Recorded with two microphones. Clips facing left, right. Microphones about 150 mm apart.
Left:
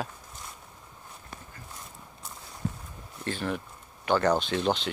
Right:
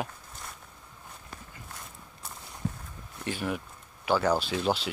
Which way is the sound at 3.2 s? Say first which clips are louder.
Left 1 dB; 10° right (ahead or behind).